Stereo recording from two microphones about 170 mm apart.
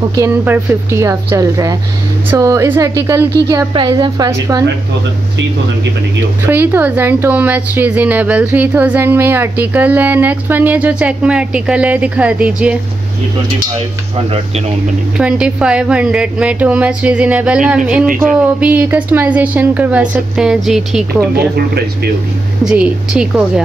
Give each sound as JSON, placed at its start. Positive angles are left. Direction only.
{"t": 0.0, "sound": "a woman's voice", "side_deg": -20}
{"t": 6.4, "sound": "a woman's voice", "side_deg": -15}
{"t": 15.1, "sound": "a woman's voice", "side_deg": -5}
{"t": 21.5, "sound": "speech", "side_deg": -70}
{"t": 22.7, "sound": "a woman's voice", "side_deg": -5}